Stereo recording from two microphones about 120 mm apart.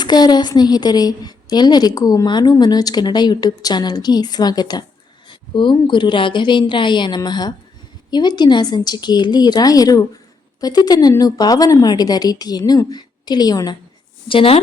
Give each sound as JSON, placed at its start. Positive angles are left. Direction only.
{"t": 0.0, "sound": "a woman's voice", "side_deg": 35}
{"t": 14.3, "sound": "speech", "side_deg": 50}